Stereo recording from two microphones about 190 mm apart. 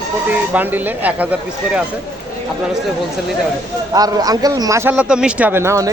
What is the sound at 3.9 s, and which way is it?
A man's voice, 20° right (ahead or behind).